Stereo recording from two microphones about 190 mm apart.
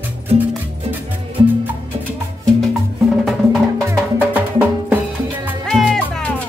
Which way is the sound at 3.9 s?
10° right (ahead or behind).